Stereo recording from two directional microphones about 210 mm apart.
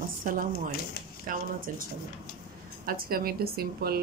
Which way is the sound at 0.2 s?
40° right (ahead or behind).